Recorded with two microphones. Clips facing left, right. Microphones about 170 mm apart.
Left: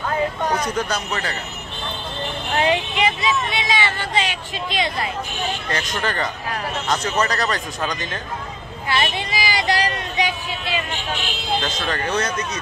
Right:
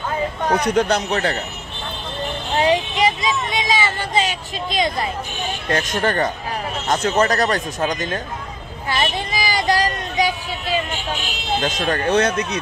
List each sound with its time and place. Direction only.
0.6 s speech: 65° right (ahead or behind)
2.6 s a man's voice: 35° right (ahead or behind)
8.8 s a sound: 45° right (ahead or behind)
11.6 s speech: 45° right (ahead or behind); by 12.5 s 60° right (ahead or behind)